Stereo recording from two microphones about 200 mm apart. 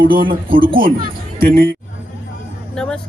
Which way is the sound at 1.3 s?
50° right (ahead or behind).